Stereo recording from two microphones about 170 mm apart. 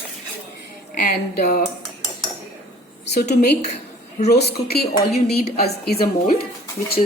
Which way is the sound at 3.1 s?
75° left (ahead or behind).